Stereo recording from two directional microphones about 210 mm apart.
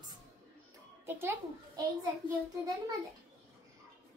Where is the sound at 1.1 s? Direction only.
15° right (ahead or behind).